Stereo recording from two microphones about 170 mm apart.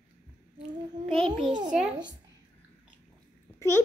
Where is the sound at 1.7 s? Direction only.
5° right (ahead or behind).